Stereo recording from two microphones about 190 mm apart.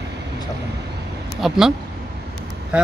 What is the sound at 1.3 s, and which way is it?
Speech, centre (ahead or behind).